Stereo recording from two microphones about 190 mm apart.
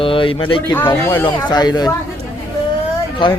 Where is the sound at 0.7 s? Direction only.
10° left (ahead or behind).